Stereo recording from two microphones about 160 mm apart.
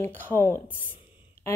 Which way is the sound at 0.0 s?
15° left (ahead or behind).